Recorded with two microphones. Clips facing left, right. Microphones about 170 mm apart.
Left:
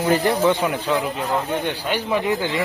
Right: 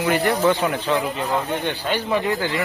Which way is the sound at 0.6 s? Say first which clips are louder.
Even; 5° left (ahead or behind).